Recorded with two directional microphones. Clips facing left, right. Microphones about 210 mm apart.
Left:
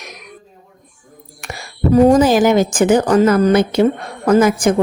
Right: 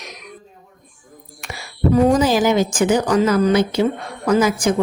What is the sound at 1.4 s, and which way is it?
Speech, 45° left (ahead or behind).